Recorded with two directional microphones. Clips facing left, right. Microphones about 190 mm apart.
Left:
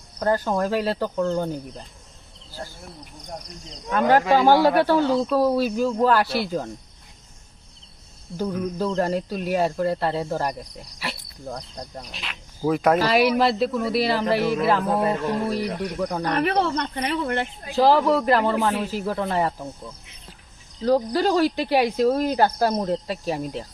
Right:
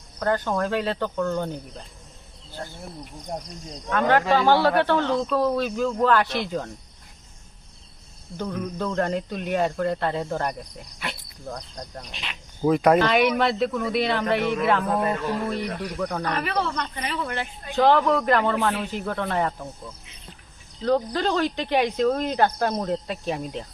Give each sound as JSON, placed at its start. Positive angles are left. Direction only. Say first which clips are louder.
{"t": 0.3, "sound": "speech", "louder": "left 2 dB", "side_deg": 10}
{"t": 3.8, "sound": "speech", "louder": "left 2 dB", "side_deg": 10}
{"t": 8.4, "sound": "speech", "louder": "left 3 dB", "side_deg": 5}
{"t": 16.3, "sound": "speech", "louder": "left 5 dB", "side_deg": 55}
{"t": 17.7, "sound": "speech", "louder": "left 1 dB", "side_deg": 5}
{"t": 20.8, "sound": "speech", "louder": "left 3 dB", "side_deg": 10}